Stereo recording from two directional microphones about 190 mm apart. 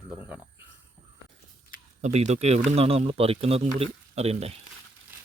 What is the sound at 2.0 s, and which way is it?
Speech, 35° right (ahead or behind).